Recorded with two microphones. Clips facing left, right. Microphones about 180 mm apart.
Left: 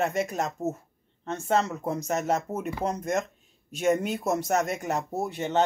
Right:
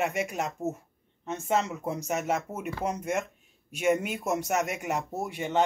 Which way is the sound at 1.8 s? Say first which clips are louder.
Left 2 dB; 35° left (ahead or behind).